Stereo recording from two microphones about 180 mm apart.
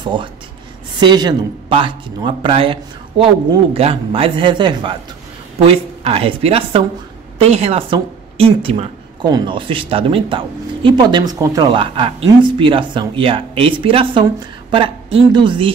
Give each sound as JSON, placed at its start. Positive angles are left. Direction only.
{"t": 0.0, "sound": "a woman's voice", "side_deg": -25}